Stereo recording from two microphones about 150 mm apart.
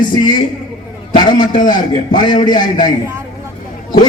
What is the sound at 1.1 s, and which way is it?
A man's voice, 30° left (ahead or behind).